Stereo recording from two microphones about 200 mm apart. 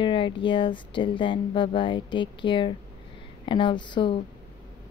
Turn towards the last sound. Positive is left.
turn(degrees=25)  # may be behind; listen again after turning